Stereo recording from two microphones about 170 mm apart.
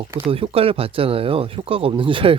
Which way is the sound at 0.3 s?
35° right (ahead or behind).